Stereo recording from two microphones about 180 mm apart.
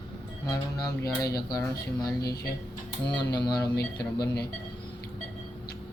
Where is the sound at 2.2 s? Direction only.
60° left (ahead or behind).